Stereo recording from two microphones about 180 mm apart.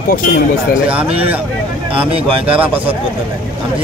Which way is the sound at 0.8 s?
5° right (ahead or behind).